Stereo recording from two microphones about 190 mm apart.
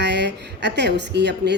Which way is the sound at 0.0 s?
65° right (ahead or behind).